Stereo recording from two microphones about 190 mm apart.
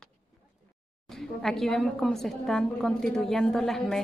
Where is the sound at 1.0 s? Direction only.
Centre (ahead or behind).